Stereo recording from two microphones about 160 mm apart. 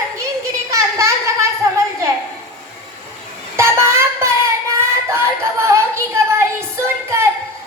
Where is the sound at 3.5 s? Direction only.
15° right (ahead or behind).